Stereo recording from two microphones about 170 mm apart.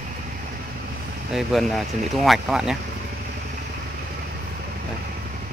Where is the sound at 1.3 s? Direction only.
Centre (ahead or behind).